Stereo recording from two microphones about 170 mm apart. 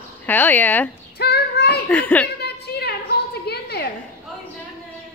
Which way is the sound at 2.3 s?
70° left (ahead or behind).